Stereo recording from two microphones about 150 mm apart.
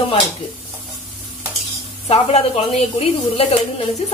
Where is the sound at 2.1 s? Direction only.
40° left (ahead or behind).